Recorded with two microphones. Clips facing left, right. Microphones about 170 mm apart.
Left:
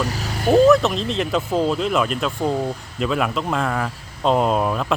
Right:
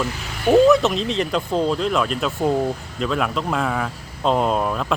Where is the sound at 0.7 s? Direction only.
Centre (ahead or behind).